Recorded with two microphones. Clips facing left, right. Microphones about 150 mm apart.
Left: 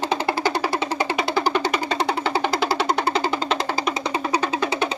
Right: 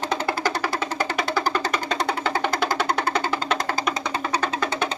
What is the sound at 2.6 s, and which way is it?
Music, 5° left (ahead or behind).